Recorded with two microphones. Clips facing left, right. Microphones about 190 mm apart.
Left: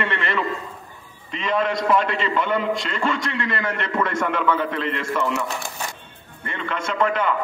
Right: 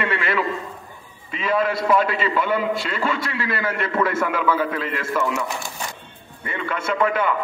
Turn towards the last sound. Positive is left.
turn(degrees=-5)  # may be behind; listen again after turning